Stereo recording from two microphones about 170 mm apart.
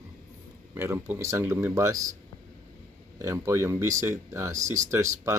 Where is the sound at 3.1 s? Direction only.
15° right (ahead or behind).